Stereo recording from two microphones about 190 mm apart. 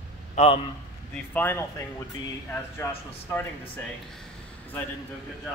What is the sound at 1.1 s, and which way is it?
Speech, 10° left (ahead or behind).